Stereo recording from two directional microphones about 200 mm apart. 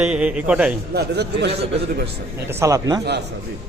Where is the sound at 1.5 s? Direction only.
30° right (ahead or behind).